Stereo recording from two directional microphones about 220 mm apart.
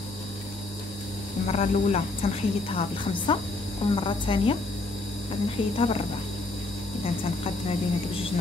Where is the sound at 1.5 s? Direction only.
30° left (ahead or behind).